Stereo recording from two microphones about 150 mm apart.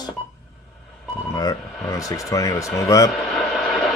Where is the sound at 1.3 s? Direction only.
25° left (ahead or behind).